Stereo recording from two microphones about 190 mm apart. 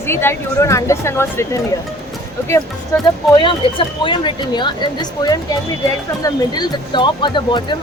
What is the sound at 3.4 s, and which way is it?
Speech, 25° left (ahead or behind).